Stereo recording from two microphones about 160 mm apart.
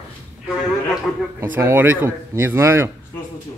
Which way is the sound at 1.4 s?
15° right (ahead or behind).